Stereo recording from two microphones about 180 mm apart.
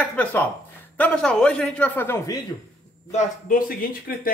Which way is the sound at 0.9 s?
5° left (ahead or behind).